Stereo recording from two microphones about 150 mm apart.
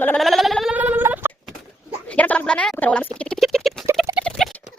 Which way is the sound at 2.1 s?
10° left (ahead or behind).